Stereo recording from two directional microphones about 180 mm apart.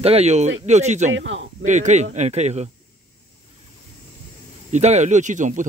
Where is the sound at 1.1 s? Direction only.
90° right.